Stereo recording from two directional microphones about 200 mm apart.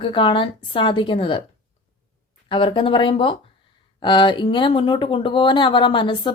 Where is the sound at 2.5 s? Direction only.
25° left (ahead or behind).